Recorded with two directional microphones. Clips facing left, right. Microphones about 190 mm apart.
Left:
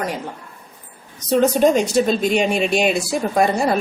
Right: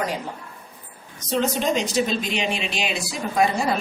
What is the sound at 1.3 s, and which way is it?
Speech, 45° left (ahead or behind).